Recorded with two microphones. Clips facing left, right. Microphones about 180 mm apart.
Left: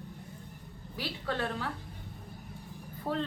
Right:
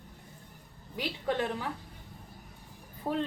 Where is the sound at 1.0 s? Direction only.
20° right (ahead or behind).